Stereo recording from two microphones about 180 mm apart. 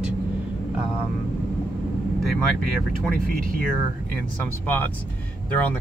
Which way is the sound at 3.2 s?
50° right (ahead or behind).